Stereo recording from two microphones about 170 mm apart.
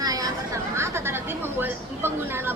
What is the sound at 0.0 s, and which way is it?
Chatter, 20° right (ahead or behind).